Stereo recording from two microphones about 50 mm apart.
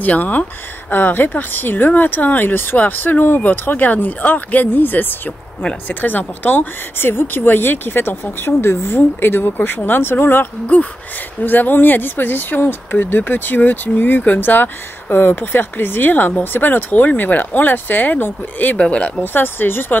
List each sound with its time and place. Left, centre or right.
0.0 s speech: left
18.8 s speech: left
19.2 s speech: left